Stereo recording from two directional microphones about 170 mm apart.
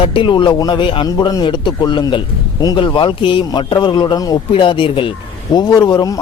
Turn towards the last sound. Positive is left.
turn(degrees=25)  # may be behind; listen again after turning